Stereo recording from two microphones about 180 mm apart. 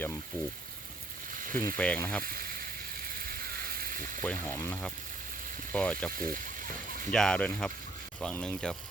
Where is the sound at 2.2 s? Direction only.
55° right (ahead or behind).